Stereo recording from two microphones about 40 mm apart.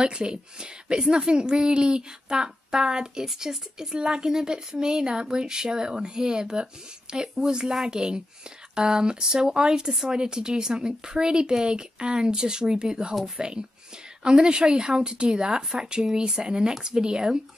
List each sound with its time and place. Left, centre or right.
0.0 s speech: right